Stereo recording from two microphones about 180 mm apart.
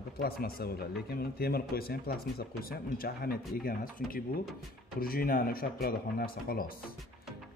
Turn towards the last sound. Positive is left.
turn(degrees=55)  # may be behind; listen again after turning